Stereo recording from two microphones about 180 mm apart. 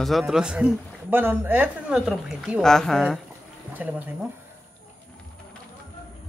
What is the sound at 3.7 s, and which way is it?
Speech, 10° right (ahead or behind).